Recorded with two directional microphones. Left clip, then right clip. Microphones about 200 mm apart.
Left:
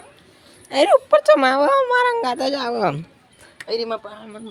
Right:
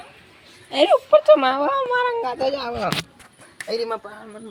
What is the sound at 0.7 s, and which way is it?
Speech, 15° left (ahead or behind).